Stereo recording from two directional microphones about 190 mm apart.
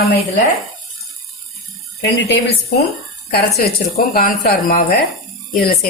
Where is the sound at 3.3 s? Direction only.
55° left (ahead or behind).